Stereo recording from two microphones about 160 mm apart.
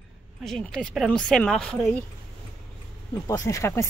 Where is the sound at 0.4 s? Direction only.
5° left (ahead or behind).